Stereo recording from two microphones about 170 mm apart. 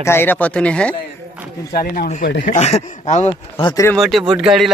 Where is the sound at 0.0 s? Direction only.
15° left (ahead or behind).